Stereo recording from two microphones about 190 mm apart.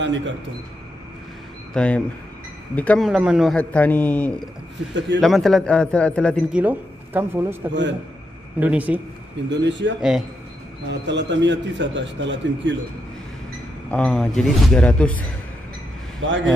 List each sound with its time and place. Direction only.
0.0 s a man's voice: 75° right (ahead or behind)
1.7 s a man's voice: 5° left (ahead or behind)
4.9 s a man's voice: 70° right (ahead or behind)
5.2 s a man's voice: centre (ahead or behind)
6.5 s a man's voice: 10° right (ahead or behind)
9.5 s a man's voice: 70° right (ahead or behind)
13.8 s a man's voice: 5° left (ahead or behind)
16.2 s a man's voice: 75° right (ahead or behind)